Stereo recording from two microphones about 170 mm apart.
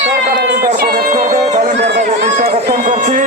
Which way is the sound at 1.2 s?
45° right (ahead or behind).